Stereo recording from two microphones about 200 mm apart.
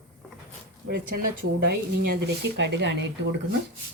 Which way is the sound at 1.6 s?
55° right (ahead or behind).